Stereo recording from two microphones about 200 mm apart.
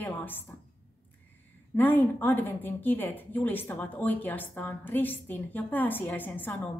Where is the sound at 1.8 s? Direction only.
10° left (ahead or behind).